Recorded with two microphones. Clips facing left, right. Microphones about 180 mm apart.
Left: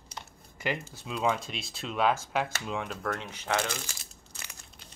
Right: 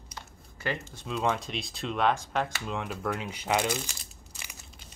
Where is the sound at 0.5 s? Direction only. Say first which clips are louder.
Left 1 dB; 10° left (ahead or behind); by 3.9 s 15° right (ahead or behind).